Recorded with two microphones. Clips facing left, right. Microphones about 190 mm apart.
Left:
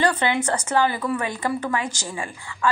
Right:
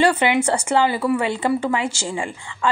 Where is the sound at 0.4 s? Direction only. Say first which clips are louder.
Right 3 dB; 10° right (ahead or behind).